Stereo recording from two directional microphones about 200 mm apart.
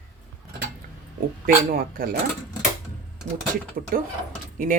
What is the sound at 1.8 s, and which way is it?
Speech, 45° right (ahead or behind).